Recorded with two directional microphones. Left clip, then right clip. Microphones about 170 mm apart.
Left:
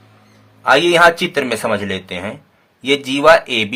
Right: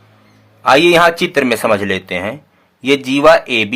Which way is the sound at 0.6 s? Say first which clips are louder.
Right 2 dB; 35° right (ahead or behind).